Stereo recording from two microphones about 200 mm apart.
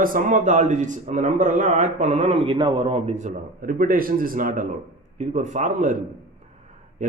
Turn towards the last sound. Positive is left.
turn(degrees=-40)  # may be behind; listen again after turning